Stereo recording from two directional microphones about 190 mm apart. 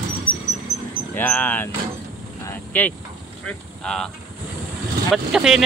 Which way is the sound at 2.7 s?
10° left (ahead or behind).